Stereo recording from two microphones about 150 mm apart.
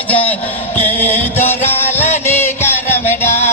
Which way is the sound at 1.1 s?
10° left (ahead or behind).